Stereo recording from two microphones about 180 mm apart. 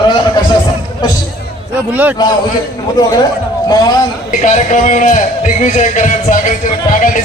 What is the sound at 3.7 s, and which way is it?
Speech, 20° left (ahead or behind).